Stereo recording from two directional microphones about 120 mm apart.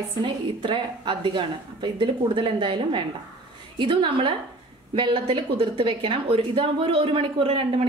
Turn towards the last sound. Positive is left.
turn(degrees=-45)  # may be behind; listen again after turning